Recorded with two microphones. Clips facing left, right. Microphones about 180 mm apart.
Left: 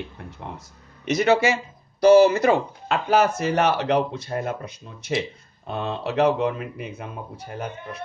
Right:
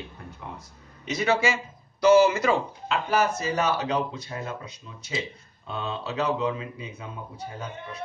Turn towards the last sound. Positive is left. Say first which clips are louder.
# left 4 dB
turn(degrees=70)  # may be behind; listen again after turning